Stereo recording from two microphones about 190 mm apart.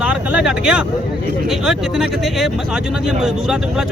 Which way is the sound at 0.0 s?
5° right (ahead or behind).